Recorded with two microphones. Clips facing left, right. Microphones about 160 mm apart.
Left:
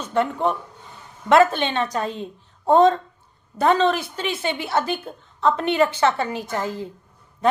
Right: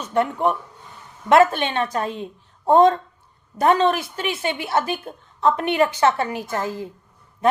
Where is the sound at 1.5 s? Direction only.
30° left (ahead or behind).